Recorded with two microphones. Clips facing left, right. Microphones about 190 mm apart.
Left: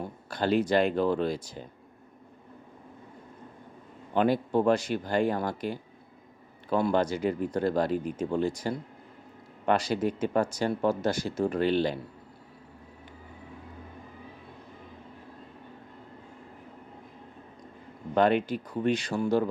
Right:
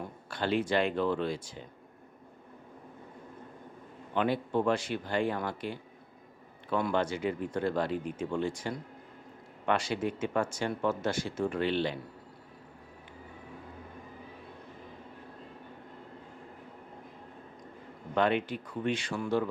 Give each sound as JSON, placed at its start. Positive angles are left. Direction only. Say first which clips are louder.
{"t": 0.3, "sound": "speech", "louder": "left 4 dB", "side_deg": 40}
{"t": 4.1, "sound": "speech", "louder": "left 4 dB", "side_deg": 40}
{"t": 18.1, "sound": "speech", "louder": "left 4 dB", "side_deg": 40}